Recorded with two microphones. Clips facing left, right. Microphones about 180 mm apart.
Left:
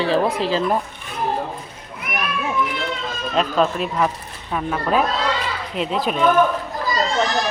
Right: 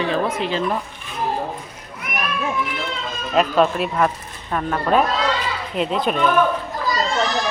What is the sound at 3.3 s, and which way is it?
Speech, 5° right (ahead or behind).